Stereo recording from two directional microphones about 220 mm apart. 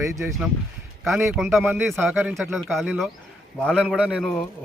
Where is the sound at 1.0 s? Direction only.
Centre (ahead or behind).